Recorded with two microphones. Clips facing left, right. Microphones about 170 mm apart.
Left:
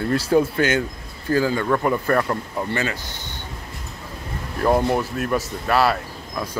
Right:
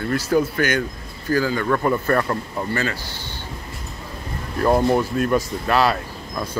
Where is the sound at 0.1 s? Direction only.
30° left (ahead or behind).